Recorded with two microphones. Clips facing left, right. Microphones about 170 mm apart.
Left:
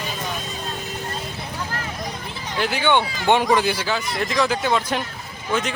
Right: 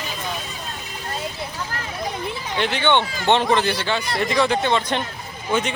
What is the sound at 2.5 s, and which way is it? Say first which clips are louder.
Speech: even; 5° left (ahead or behind).